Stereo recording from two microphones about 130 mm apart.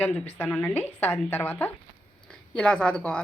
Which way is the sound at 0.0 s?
15° left (ahead or behind).